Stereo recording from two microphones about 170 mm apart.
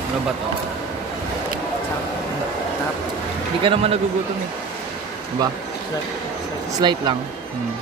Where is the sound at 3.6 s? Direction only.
35° right (ahead or behind).